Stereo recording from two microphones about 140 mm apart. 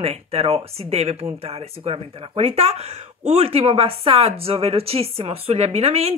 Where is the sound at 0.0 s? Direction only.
45° right (ahead or behind).